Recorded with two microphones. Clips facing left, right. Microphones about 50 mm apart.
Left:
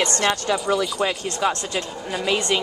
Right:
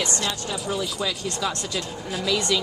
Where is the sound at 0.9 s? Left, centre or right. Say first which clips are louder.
Left 4 dB; left.